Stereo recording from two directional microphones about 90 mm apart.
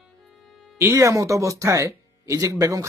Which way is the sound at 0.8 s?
30° right (ahead or behind).